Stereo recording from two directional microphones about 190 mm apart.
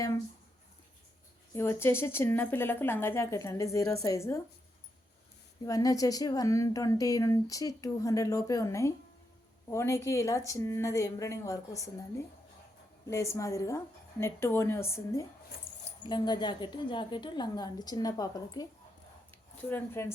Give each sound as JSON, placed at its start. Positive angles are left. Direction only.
{"t": 1.5, "sound": "a woman's voice", "side_deg": 10}
{"t": 5.6, "sound": "a woman's voice", "side_deg": 15}
{"t": 19.7, "sound": "a woman's voice", "side_deg": 10}